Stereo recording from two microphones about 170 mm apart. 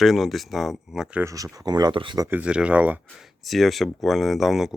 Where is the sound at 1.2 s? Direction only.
20° right (ahead or behind).